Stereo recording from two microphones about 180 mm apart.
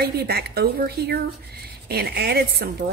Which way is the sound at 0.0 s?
60° right (ahead or behind).